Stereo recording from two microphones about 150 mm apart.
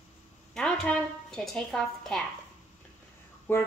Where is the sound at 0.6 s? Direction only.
5° left (ahead or behind).